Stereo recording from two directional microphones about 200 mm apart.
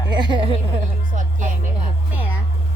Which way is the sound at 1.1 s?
40° right (ahead or behind).